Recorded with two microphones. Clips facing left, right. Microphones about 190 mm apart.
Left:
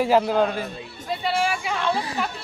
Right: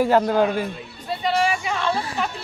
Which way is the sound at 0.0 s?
Centre (ahead or behind).